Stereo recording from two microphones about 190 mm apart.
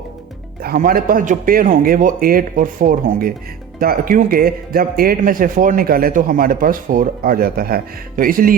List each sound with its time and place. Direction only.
0.6 s speech: 50° right (ahead or behind)